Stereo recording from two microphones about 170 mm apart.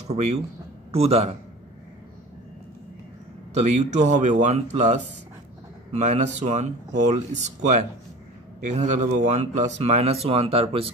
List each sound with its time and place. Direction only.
0.1 s speech: 40° right (ahead or behind)
3.5 s speech: 45° right (ahead or behind)